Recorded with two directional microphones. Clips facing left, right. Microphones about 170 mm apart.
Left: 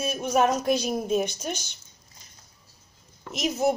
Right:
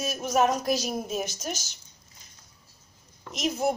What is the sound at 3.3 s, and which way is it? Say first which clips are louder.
Speech: left 2 dB; 5° left (ahead or behind).